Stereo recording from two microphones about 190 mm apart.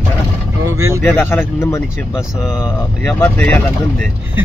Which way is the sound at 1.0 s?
10° left (ahead or behind).